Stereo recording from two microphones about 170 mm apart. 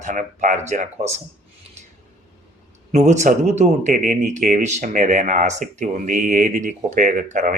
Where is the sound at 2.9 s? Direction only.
45° right (ahead or behind).